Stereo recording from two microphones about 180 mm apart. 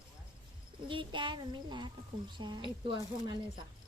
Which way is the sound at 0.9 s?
25° right (ahead or behind).